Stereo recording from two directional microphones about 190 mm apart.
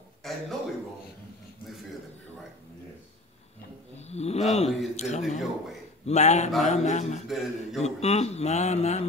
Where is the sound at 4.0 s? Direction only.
35° left (ahead or behind).